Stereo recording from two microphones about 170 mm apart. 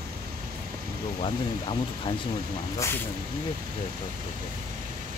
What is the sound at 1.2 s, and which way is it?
Speech, 30° left (ahead or behind).